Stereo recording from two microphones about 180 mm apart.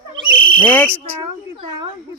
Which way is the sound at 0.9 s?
15° right (ahead or behind).